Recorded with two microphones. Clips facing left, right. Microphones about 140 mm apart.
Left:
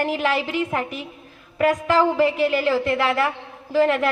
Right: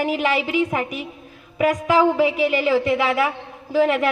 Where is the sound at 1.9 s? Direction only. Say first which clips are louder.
Right 3 dB; 15° right (ahead or behind).